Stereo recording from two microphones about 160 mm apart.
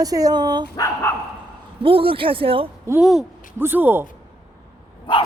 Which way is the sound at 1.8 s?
35° right (ahead or behind).